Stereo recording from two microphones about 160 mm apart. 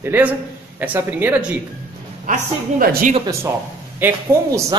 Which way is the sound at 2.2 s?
60° right (ahead or behind).